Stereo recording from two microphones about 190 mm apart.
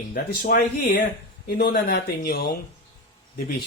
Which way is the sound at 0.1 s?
50° left (ahead or behind).